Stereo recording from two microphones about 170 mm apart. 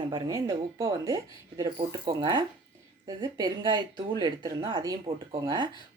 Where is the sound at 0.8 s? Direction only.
20° right (ahead or behind).